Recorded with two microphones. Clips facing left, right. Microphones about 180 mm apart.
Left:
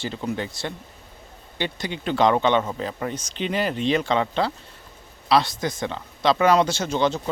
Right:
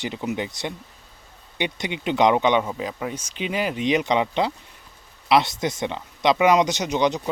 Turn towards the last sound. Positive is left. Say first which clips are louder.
# right 1 dB
turn(degrees=-15)  # may be behind; listen again after turning